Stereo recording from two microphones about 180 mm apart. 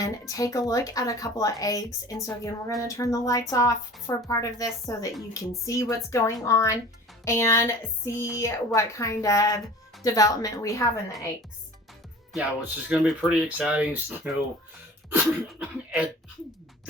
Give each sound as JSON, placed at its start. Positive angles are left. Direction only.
{"t": 0.0, "sound": "speech", "side_deg": 20}
{"t": 12.3, "sound": "speech", "side_deg": -10}